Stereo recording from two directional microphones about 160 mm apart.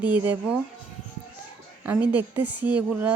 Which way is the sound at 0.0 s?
10° right (ahead or behind).